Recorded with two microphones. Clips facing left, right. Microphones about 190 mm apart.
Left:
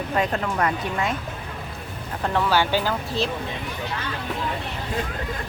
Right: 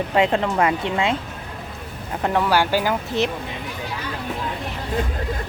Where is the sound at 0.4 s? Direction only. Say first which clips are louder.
Right 4 dB; 25° right (ahead or behind).